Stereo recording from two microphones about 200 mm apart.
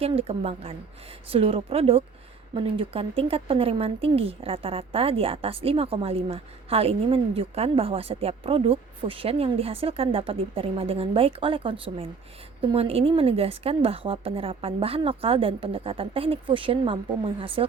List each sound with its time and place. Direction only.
0.0 s speech: 30° right (ahead or behind)